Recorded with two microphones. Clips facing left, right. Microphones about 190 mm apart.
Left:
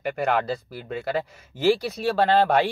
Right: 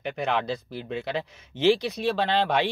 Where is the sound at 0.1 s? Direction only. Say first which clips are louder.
Left 3 dB; 5° left (ahead or behind).